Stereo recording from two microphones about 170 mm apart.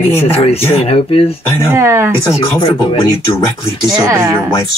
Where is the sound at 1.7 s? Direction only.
15° right (ahead or behind).